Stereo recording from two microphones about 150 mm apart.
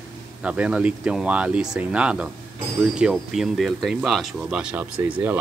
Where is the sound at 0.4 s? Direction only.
5° right (ahead or behind).